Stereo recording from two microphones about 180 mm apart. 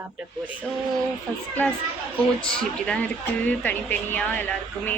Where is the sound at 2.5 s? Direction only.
5° left (ahead or behind).